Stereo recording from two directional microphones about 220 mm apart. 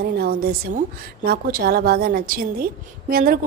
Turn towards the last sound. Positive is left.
turn(degrees=-40)  # may be behind; listen again after turning